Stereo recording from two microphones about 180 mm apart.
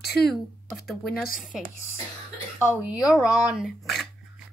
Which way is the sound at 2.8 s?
5° right (ahead or behind).